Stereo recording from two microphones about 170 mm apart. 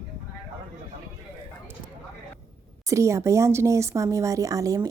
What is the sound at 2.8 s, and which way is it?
A woman's voice, 20° right (ahead or behind).